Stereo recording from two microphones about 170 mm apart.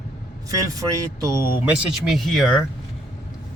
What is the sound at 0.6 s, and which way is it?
A man's voice, 20° right (ahead or behind).